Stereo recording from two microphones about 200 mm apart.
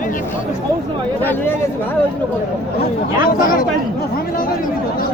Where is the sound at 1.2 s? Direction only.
10° left (ahead or behind).